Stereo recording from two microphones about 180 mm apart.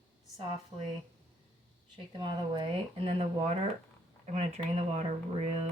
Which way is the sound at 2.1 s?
25° right (ahead or behind).